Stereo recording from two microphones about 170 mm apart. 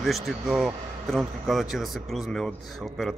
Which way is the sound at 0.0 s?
Centre (ahead or behind).